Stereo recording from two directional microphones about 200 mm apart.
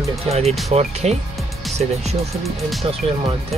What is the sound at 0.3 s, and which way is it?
Speech, 30° right (ahead or behind).